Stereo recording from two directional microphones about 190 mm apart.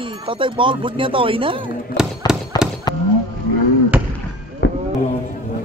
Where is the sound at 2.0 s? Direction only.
5° right (ahead or behind).